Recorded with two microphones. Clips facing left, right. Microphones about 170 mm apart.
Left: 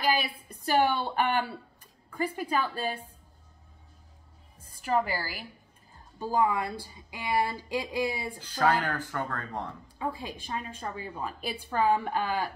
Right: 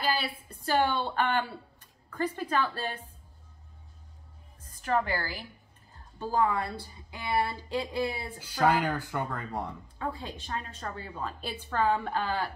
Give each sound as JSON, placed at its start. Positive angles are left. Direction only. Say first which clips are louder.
{"t": 0.0, "sound": "speech", "louder": "left 2 dB", "side_deg": 15}
{"t": 4.6, "sound": "a woman's voice", "louder": "left 1 dB", "side_deg": 10}
{"t": 8.4, "sound": "speech", "louder": "right 1 dB", "side_deg": -10}
{"t": 9.9, "sound": "speech", "louder": "left 2 dB", "side_deg": 10}